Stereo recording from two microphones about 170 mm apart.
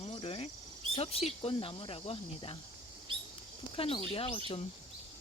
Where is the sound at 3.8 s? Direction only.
35° left (ahead or behind).